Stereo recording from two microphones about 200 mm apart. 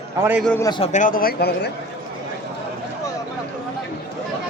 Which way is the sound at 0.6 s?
25° left (ahead or behind).